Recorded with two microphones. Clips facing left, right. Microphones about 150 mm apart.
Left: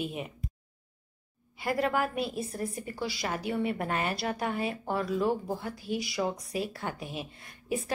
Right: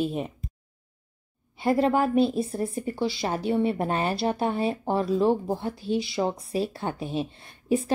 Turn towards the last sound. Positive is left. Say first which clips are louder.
# right 8 dB
turn(degrees=-30)  # may be behind; listen again after turning